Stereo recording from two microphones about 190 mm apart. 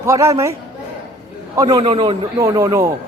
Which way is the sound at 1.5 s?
20° right (ahead or behind).